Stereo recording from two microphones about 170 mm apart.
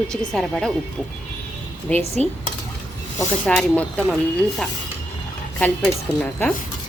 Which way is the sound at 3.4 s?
10° left (ahead or behind).